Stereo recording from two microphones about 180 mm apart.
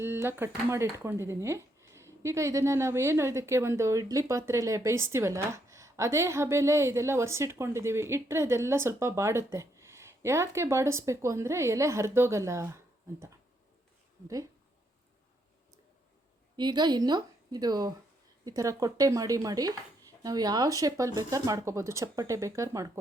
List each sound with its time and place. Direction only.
0.0 s speech: 15° right (ahead or behind)
16.6 s speech: 25° right (ahead or behind)